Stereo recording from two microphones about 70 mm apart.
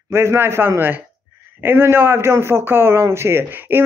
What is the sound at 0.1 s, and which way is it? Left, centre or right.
A man's voice, right.